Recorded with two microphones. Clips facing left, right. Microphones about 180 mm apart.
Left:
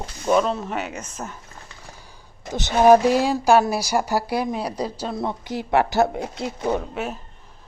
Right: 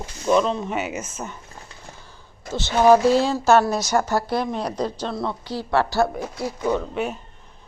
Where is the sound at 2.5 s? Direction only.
15° left (ahead or behind).